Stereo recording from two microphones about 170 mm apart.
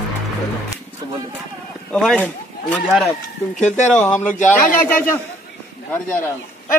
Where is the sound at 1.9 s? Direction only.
5° left (ahead or behind).